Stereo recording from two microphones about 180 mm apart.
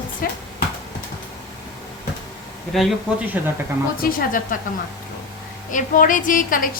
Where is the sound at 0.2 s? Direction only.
50° left (ahead or behind).